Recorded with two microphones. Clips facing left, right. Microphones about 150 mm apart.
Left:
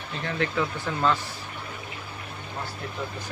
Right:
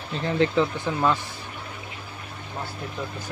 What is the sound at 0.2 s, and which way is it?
Speech, 30° right (ahead or behind).